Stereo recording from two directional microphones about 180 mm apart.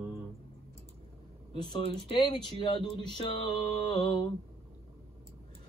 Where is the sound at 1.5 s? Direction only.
25° left (ahead or behind).